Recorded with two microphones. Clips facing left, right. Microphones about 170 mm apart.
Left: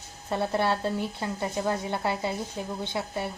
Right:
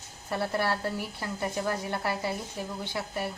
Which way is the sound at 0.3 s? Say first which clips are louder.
Left 3 dB; 20° left (ahead or behind).